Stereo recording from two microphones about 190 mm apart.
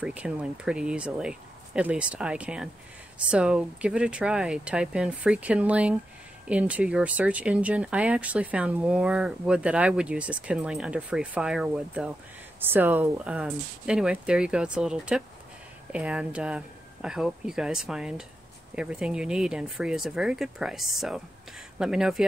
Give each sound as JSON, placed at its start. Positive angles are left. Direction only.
{"t": 0.0, "sound": "speech", "side_deg": -5}